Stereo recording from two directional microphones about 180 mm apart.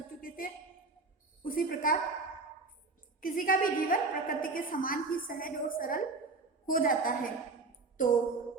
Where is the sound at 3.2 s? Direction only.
50° left (ahead or behind).